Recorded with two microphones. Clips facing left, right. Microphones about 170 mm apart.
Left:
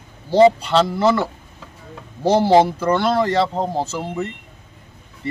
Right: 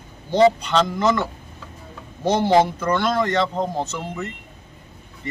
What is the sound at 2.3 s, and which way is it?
Speech, 35° left (ahead or behind).